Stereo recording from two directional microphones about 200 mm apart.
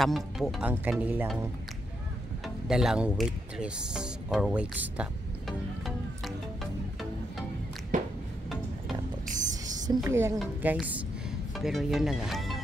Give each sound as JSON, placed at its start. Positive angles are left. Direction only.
{"t": 0.0, "sound": "speech", "side_deg": 0}
{"t": 2.4, "sound": "speech", "side_deg": -5}
{"t": 5.9, "sound": "music", "side_deg": 0}
{"t": 7.9, "sound": "music", "side_deg": -40}
{"t": 9.3, "sound": "music", "side_deg": -40}
{"t": 10.0, "sound": "a woman's voice", "side_deg": -15}